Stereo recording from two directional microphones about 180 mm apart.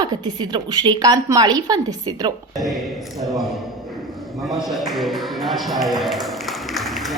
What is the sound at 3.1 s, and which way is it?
Speech, centre (ahead or behind).